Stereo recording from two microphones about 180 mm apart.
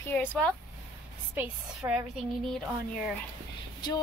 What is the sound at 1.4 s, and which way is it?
A woman's voice, 10° right (ahead or behind).